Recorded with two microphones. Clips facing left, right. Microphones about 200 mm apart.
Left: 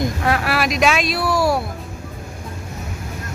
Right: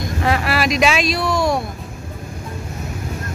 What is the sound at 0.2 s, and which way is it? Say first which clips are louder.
Speech: right 5 dB; centre (ahead or behind).